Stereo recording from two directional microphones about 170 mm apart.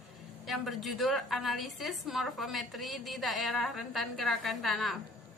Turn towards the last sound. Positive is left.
turn(degrees=0)  # may be behind; listen again after turning